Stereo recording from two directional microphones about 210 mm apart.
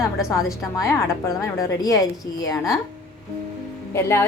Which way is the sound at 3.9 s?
10° left (ahead or behind).